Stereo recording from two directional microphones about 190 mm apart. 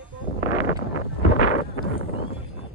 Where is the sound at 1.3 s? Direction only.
45° left (ahead or behind).